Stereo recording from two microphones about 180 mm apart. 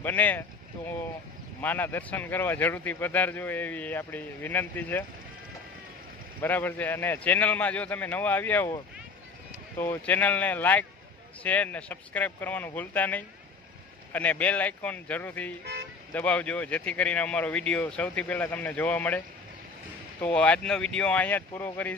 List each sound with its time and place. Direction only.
0.0 s a man's voice: 10° left (ahead or behind)
1.6 s a man's voice: 10° left (ahead or behind)
6.4 s a man's voice: 10° left (ahead or behind)
9.8 s a man's voice: 10° left (ahead or behind)
15.6 s music: 65° right (ahead or behind)
16.1 s a man's voice: 10° left (ahead or behind)